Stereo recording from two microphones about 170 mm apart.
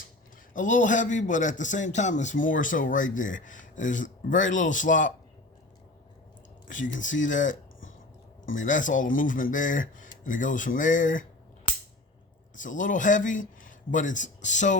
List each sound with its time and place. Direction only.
0.5 s a man's voice: 50° left (ahead or behind)
6.7 s a man's voice: 50° left (ahead or behind)
8.5 s a man's voice: 50° left (ahead or behind)
12.5 s a man's voice: 50° left (ahead or behind)